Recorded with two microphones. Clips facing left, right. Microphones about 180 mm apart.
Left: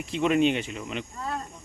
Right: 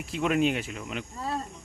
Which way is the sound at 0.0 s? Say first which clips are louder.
Left 3 dB; centre (ahead or behind).